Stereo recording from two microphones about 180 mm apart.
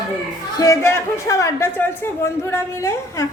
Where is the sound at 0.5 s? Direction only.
20° left (ahead or behind).